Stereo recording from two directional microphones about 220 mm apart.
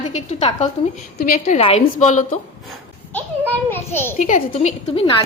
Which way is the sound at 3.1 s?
10° left (ahead or behind).